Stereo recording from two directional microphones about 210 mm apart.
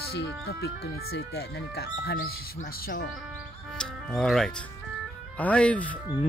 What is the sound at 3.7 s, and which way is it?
Music, 5° left (ahead or behind).